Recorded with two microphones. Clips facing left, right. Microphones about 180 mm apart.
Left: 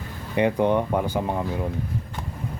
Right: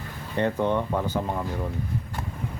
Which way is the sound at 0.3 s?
15° left (ahead or behind).